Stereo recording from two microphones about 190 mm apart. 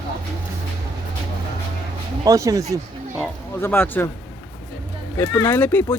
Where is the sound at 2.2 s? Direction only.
20° right (ahead or behind).